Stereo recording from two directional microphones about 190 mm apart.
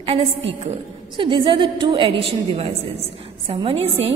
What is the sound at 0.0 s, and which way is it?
Speech, 30° right (ahead or behind).